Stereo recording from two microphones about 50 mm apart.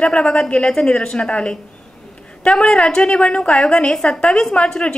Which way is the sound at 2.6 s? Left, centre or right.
Centre.